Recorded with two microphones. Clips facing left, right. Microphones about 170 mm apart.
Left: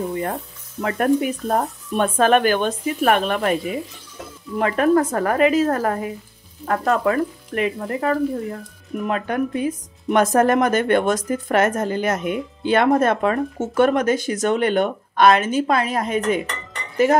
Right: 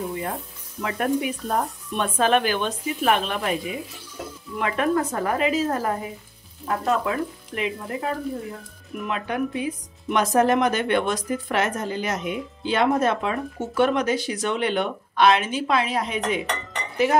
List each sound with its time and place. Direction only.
0.8 s speech: 50° left (ahead or behind)
4.6 s speech: 45° left (ahead or behind)